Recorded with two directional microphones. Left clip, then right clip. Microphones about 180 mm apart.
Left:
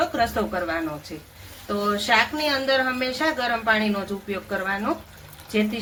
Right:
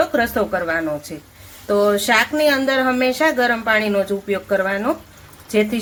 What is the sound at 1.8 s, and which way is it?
A woman's voice, 55° right (ahead or behind).